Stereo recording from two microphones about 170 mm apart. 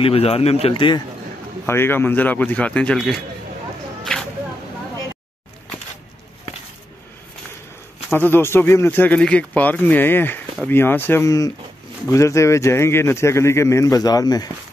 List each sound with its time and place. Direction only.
0.0 s speech: 35° left (ahead or behind)
1.7 s speech: 15° left (ahead or behind)
8.1 s speech: 15° left (ahead or behind)